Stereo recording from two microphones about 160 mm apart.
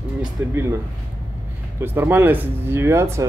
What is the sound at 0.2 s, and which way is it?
Speech, 20° right (ahead or behind).